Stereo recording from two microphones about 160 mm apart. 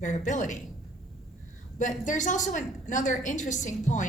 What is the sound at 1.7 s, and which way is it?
A woman's voice, 50° left (ahead or behind).